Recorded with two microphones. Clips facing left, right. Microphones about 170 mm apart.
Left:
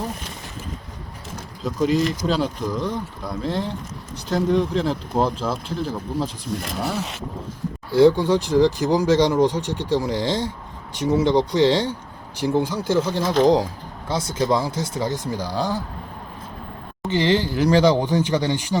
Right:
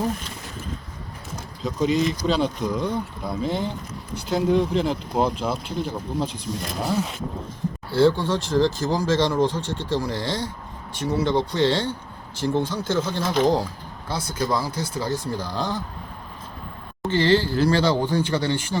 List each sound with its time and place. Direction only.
1.6 s speech: 5° left (ahead or behind)
7.9 s speech: 15° left (ahead or behind)
17.1 s speech: 15° left (ahead or behind)